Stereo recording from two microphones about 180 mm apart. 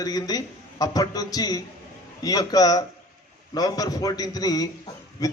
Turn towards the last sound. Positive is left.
turn(degrees=20)  # may be behind; listen again after turning